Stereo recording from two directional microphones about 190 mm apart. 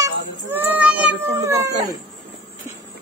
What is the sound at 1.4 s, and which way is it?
Speech, 15° right (ahead or behind).